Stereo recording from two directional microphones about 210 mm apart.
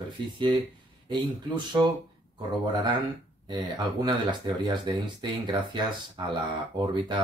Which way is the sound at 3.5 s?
20° right (ahead or behind).